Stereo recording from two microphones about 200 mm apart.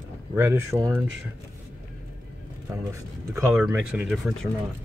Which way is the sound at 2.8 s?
10° right (ahead or behind).